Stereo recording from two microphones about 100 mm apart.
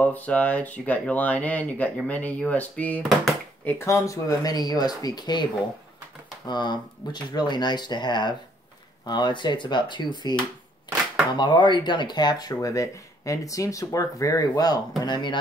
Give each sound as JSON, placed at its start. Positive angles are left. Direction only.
{"t": 0.0, "sound": "speech", "side_deg": 15}
{"t": 3.6, "sound": "speech", "side_deg": 30}
{"t": 11.3, "sound": "speech", "side_deg": 50}